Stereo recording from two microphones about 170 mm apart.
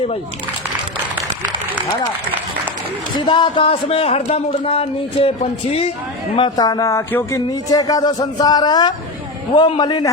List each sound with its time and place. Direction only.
3.2 s speech: 30° left (ahead or behind)
6.3 s speech: 25° left (ahead or behind)